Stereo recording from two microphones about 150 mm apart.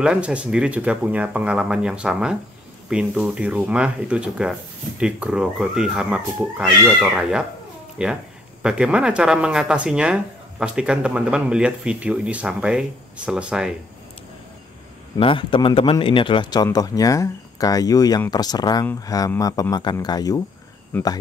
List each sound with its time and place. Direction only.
0.0 s speech: 5° right (ahead or behind)
15.1 s a man's voice: 35° left (ahead or behind)
20.9 s speech: 10° left (ahead or behind)